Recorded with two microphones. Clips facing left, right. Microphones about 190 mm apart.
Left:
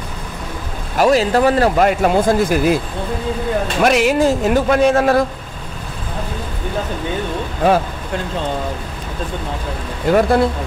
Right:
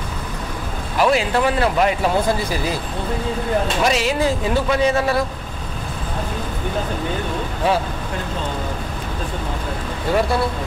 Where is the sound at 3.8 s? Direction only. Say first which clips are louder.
Left 9 dB; 60° left (ahead or behind).